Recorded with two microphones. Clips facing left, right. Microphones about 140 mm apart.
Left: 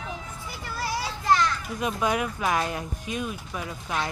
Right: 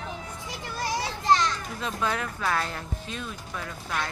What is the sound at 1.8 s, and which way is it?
Speech, 15° left (ahead or behind).